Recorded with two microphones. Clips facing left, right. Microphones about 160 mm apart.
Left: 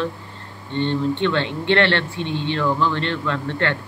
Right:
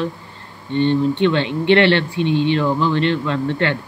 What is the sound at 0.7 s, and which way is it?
Speech, 15° right (ahead or behind).